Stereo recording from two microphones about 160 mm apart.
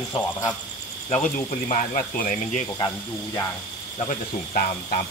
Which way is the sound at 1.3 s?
55° left (ahead or behind).